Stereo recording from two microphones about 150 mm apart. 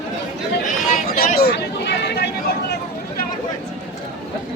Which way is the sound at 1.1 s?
85° left.